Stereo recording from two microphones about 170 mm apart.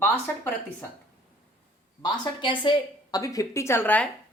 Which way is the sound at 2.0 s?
25° left (ahead or behind).